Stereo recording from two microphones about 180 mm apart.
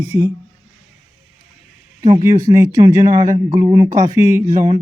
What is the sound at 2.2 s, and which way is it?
Speech, 20° right (ahead or behind).